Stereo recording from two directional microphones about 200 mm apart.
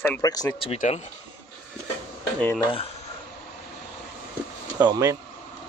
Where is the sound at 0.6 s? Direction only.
30° left (ahead or behind).